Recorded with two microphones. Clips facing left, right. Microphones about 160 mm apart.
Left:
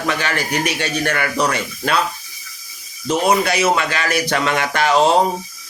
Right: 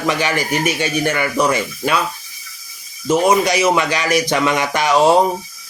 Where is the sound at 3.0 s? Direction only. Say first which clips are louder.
Right 2 dB; 10° right (ahead or behind).